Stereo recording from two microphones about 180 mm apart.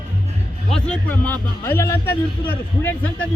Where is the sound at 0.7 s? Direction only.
5° left (ahead or behind).